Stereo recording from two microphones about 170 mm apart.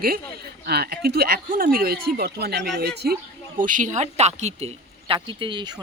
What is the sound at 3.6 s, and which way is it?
Speech, 50° right (ahead or behind).